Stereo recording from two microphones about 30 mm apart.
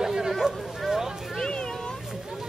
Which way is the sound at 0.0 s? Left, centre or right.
Centre.